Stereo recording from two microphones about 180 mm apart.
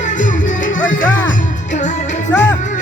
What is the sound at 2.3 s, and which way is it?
Music, 10° left (ahead or behind).